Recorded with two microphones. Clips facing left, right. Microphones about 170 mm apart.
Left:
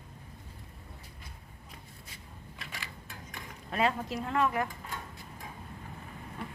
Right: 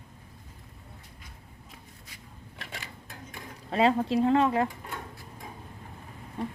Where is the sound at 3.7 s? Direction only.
30° right (ahead or behind).